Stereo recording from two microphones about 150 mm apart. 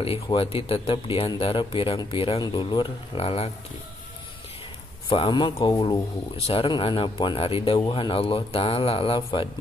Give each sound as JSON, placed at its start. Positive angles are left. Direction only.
{"t": 0.0, "sound": "a man's voice", "side_deg": 40}
{"t": 5.1, "sound": "a man's voice", "side_deg": 30}